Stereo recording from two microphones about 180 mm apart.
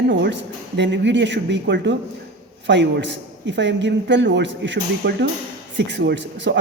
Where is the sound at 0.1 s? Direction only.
80° right.